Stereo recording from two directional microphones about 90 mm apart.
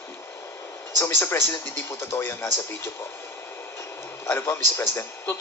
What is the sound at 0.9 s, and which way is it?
A man's voice, 25° left (ahead or behind).